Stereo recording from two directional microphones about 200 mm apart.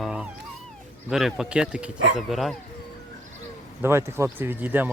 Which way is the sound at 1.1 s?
Centre (ahead or behind).